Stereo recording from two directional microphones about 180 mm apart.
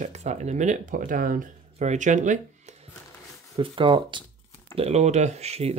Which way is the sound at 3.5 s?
30° right (ahead or behind).